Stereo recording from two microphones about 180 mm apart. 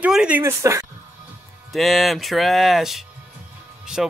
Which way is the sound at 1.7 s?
Centre (ahead or behind).